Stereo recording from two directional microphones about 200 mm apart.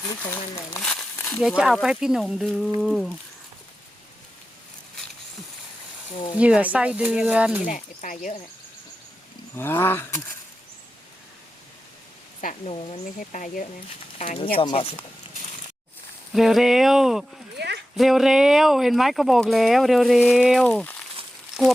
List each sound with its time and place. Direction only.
0.2 s speech: 15° left (ahead or behind)
0.8 s speech: centre (ahead or behind)
1.1 s a sound: 10° left (ahead or behind)
1.4 s speech: centre (ahead or behind)
6.3 s speech: 5° right (ahead or behind)
7.6 s speech: 40° left (ahead or behind)
9.6 s speech: 10° left (ahead or behind)
12.4 s speech: 40° left (ahead or behind)
14.2 s speech: 30° left (ahead or behind)
16.3 s speech: centre (ahead or behind)
21.5 s a sound: centre (ahead or behind)